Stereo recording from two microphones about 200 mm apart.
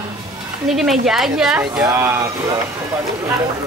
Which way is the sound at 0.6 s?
Centre (ahead or behind).